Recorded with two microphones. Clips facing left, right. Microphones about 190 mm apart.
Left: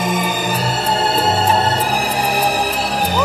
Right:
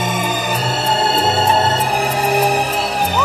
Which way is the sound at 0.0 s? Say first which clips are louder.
Left 1 dB; 30° left (ahead or behind).